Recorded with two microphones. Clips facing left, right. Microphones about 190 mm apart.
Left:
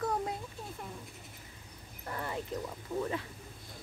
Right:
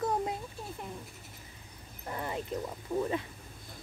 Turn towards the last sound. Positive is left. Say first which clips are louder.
# right 3 dB
turn(degrees=-15)  # may be behind; listen again after turning